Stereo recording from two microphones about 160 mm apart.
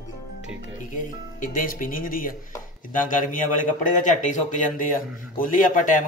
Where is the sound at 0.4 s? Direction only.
55° left (ahead or behind).